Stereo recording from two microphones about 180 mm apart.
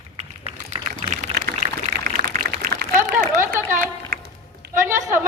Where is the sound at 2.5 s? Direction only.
60° right (ahead or behind).